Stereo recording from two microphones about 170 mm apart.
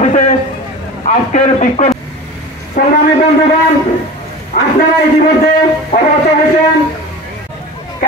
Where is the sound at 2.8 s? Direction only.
50° left (ahead or behind).